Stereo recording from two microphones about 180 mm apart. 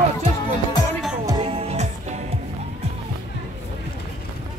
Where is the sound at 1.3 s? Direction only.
25° right (ahead or behind).